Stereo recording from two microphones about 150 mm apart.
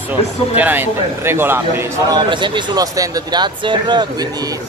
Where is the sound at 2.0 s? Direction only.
30° right (ahead or behind).